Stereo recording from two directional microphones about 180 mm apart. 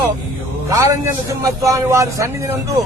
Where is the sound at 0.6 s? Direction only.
15° right (ahead or behind).